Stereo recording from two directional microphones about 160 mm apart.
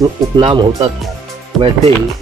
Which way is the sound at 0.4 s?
35° right (ahead or behind).